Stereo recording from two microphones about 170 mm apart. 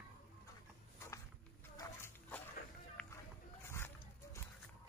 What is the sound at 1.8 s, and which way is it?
Dog, 15° left (ahead or behind).